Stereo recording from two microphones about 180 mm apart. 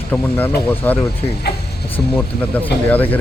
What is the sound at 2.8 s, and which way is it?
Speech, 10° left (ahead or behind).